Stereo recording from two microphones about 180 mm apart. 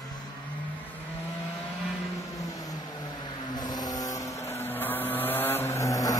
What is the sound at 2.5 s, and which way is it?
Vehicle, 20° left (ahead or behind).